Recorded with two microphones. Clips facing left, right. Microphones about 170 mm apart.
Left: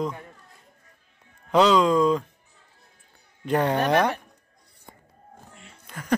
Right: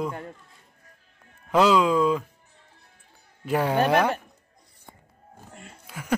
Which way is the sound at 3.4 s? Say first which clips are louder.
Even; 5° right (ahead or behind).